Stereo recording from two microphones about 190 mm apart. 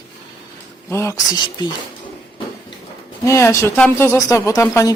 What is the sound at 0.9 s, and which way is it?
Speech, 15° left (ahead or behind).